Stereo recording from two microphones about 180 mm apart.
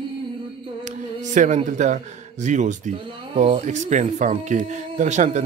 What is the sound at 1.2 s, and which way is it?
A man's voice, 45° right (ahead or behind).